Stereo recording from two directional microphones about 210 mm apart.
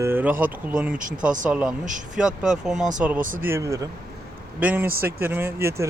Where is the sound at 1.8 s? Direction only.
35° right (ahead or behind).